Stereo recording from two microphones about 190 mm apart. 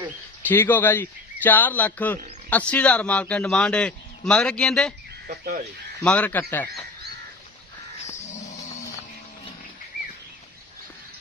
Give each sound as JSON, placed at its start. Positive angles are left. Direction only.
{"t": 0.4, "sound": "a man's voice", "side_deg": 10}
{"t": 5.3, "sound": "speech", "side_deg": -50}
{"t": 6.0, "sound": "speech", "side_deg": 5}
{"t": 8.0, "sound": "crow", "side_deg": 40}